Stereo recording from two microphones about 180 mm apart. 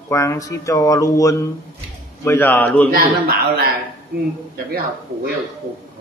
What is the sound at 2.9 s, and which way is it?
Speech, 55° right (ahead or behind).